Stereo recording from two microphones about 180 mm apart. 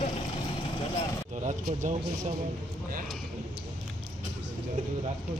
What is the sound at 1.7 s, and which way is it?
Speech, 45° right (ahead or behind).